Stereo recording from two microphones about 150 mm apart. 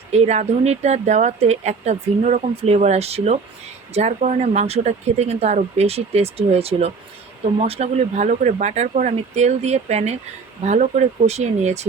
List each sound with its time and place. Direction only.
0.1 s speech: 45° right (ahead or behind)